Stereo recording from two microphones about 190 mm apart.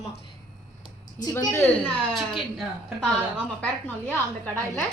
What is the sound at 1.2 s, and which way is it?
Speech, 20° left (ahead or behind).